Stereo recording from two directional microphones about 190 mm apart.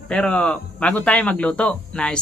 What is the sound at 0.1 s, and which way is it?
A man's voice, 5° left (ahead or behind).